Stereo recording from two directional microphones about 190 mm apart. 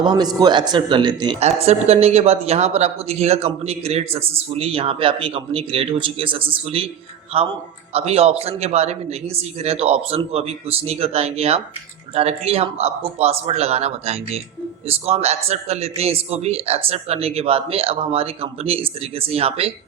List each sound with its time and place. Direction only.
0.0 s a man's voice: 20° right (ahead or behind)
1.4 s a woman's voice: 35° right (ahead or behind)